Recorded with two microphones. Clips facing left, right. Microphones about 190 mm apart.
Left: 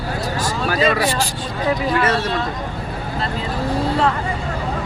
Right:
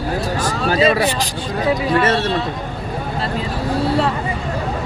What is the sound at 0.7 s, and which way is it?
Speech, 25° right (ahead or behind).